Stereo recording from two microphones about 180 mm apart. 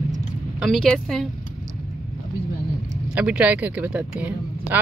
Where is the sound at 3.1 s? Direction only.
5° right (ahead or behind).